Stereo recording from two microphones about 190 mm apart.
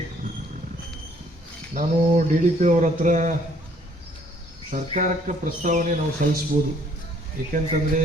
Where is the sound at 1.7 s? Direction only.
40° right (ahead or behind).